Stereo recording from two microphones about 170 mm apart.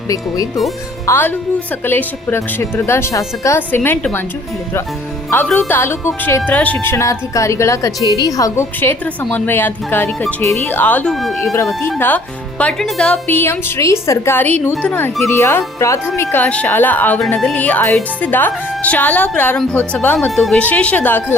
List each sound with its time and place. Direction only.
1.0 s speech: 15° left (ahead or behind)
5.5 s speech: 10° left (ahead or behind)
11.5 s speech: 15° left (ahead or behind)